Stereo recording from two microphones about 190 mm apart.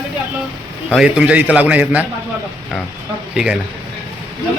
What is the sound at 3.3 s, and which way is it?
Speech, 5° right (ahead or behind).